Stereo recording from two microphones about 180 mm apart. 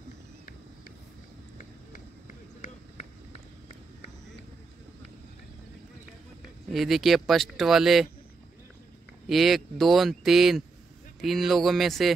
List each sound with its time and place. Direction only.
1.9 s a sound: 45° left (ahead or behind)
6.7 s speech: centre (ahead or behind)
9.3 s speech: centre (ahead or behind)